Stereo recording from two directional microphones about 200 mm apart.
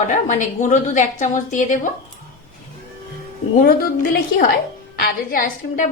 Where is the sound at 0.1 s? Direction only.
40° left (ahead or behind).